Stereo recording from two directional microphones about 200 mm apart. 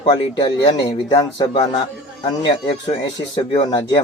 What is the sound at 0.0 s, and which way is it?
A man's voice, 20° left (ahead or behind).